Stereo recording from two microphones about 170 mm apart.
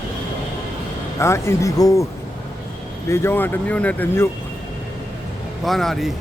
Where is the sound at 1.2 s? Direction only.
15° left (ahead or behind).